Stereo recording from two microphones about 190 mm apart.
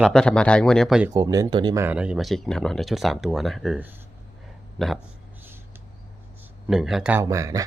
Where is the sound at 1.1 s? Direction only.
20° right (ahead or behind).